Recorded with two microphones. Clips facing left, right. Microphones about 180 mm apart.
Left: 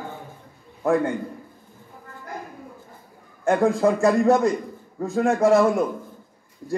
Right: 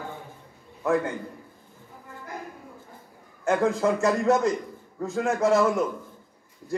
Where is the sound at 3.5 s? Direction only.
35° left (ahead or behind).